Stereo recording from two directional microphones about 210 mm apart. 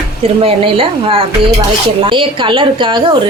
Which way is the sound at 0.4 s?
25° right (ahead or behind).